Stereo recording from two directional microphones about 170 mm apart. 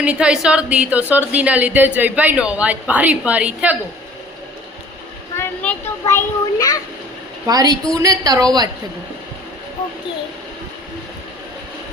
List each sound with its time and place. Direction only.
0.0 s a woman's voice: 5° right (ahead or behind)
5.4 s a sound: 15° left (ahead or behind)
7.4 s a woman's voice: 20° right (ahead or behind)